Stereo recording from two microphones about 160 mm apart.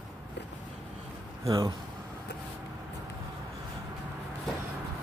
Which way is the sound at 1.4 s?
25° right (ahead or behind).